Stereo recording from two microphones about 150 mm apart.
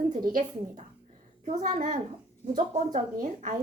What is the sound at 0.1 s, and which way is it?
Speech, 65° right (ahead or behind).